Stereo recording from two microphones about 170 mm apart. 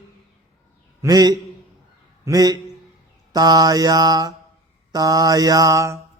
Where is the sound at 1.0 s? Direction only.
25° right (ahead or behind).